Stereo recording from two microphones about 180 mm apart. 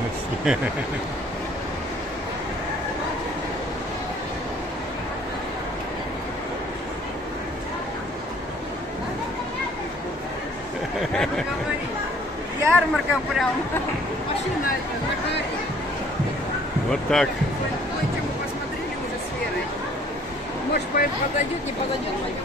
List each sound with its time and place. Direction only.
11.0 s speech: 5° left (ahead or behind)
12.6 s speech: centre (ahead or behind)
16.9 s speech: 5° left (ahead or behind)
20.7 s speech: 55° left (ahead or behind)